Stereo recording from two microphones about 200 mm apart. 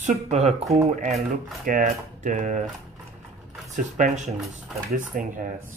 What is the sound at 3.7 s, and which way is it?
Speech, 35° right (ahead or behind).